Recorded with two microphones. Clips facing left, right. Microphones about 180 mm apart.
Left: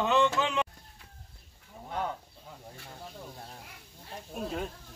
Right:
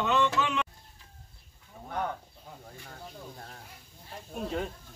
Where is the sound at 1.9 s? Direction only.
10° left (ahead or behind).